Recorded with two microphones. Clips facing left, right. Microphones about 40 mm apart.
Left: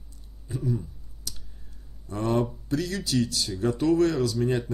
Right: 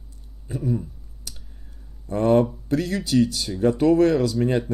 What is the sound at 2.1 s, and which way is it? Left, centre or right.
Speech, right.